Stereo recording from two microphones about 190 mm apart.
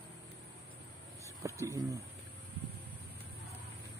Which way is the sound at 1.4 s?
15° right (ahead or behind).